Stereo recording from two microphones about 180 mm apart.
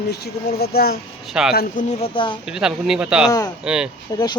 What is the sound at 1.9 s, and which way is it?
Speech, 30° left (ahead or behind).